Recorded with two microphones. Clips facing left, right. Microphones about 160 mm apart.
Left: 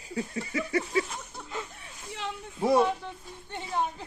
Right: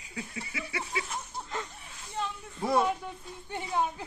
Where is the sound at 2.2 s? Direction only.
90° left.